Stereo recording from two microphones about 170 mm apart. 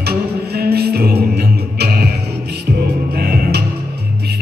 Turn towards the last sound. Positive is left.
turn(degrees=-70)  # may be behind; listen again after turning